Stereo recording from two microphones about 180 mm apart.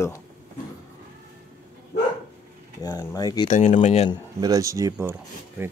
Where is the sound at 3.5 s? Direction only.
40° left (ahead or behind).